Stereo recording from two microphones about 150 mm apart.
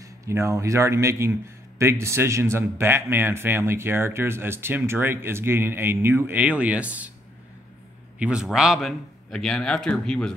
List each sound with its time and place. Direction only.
0.0 s a man's voice: 20° right (ahead or behind)
8.2 s a man's voice: 5° right (ahead or behind)